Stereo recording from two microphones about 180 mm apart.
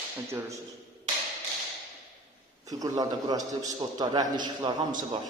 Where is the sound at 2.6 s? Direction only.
20° right (ahead or behind).